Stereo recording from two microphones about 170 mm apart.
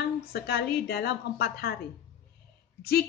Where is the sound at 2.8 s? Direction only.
65° left (ahead or behind).